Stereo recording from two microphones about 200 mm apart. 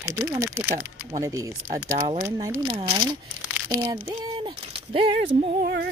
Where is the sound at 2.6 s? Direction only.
25° right (ahead or behind).